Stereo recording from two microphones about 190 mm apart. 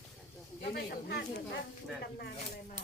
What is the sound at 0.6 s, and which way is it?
Speech, 55° left (ahead or behind).